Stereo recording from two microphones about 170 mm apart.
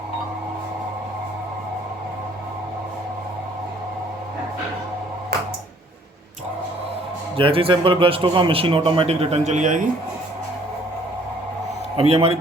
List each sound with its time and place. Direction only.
7.3 s a man's voice: 30° right (ahead or behind); by 9.8 s 45° right (ahead or behind)
11.9 s a man's voice: 35° right (ahead or behind)